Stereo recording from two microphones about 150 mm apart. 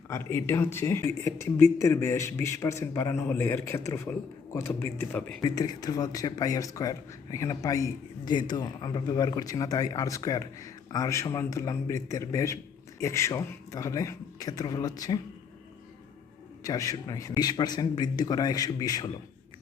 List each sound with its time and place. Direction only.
0.1 s speech: 15° left (ahead or behind)
5.4 s a man's voice: 25° left (ahead or behind)
16.6 s a man's voice: 25° left (ahead or behind)